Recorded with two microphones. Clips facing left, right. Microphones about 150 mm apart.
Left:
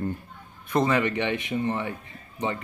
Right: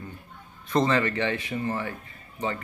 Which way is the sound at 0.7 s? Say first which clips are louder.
Even; 10° left (ahead or behind).